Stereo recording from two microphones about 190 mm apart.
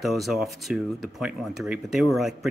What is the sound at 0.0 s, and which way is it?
Speech, centre (ahead or behind).